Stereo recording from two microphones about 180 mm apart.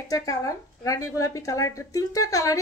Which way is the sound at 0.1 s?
20° left (ahead or behind).